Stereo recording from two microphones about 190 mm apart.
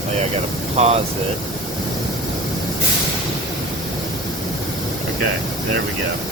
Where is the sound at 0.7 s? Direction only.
35° right (ahead or behind).